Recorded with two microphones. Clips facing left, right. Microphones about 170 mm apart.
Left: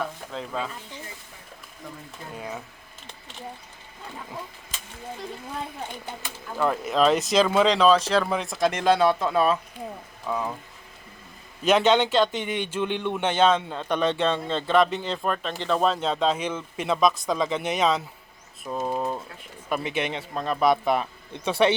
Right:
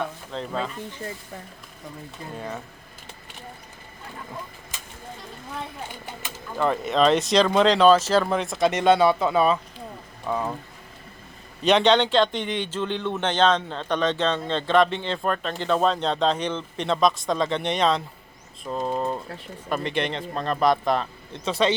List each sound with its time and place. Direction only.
0.0 s sizzle: 5° left (ahead or behind)
2.3 s speech: 5° left (ahead or behind)
6.5 s speech: 5° left (ahead or behind)
11.6 s a man's voice: 5° left (ahead or behind)